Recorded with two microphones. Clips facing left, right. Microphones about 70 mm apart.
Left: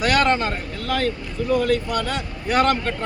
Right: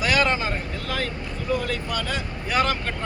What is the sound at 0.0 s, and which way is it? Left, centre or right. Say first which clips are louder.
Speech: left 3 dB; left.